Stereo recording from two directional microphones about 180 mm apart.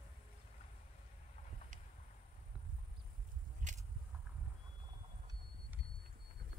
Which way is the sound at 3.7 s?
45° right (ahead or behind).